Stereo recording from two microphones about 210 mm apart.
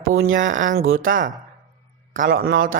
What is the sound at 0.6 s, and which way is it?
Speech, 40° right (ahead or behind).